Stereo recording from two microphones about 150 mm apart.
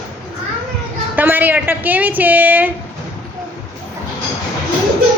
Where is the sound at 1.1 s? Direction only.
10° right (ahead or behind).